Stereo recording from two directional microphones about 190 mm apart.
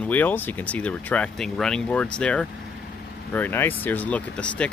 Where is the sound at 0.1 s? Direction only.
10° left (ahead or behind).